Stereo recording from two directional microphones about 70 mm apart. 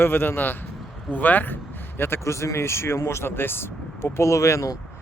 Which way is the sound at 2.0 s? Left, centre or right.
Left.